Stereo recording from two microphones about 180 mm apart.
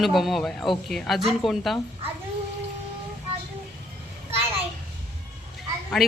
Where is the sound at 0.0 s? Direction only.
Centre (ahead or behind).